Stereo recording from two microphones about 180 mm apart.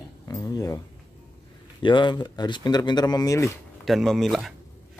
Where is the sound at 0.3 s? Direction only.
20° left (ahead or behind).